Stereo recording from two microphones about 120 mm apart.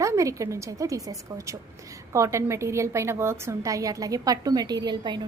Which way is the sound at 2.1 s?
25° right (ahead or behind).